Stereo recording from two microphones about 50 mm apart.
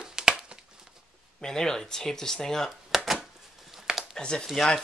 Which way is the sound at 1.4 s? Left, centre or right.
Centre.